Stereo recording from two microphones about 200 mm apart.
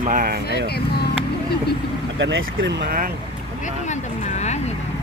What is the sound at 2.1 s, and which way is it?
Speech, 65° right (ahead or behind).